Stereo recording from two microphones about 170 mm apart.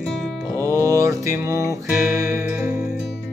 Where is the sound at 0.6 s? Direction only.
20° right (ahead or behind).